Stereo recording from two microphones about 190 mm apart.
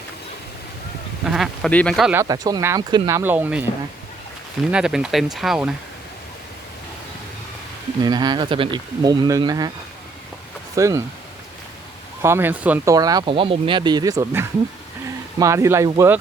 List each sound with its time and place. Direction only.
1.2 s speech: centre (ahead or behind)
2.1 s speech: 20° right (ahead or behind)
4.7 s speech: 5° right (ahead or behind)
8.0 s speech: 20° right (ahead or behind)
10.8 s speech: 15° right (ahead or behind)
12.2 s speech: 10° right (ahead or behind)